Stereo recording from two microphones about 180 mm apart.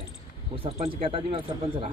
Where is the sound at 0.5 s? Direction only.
30° right (ahead or behind).